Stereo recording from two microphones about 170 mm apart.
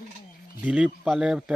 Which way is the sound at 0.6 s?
5° right (ahead or behind).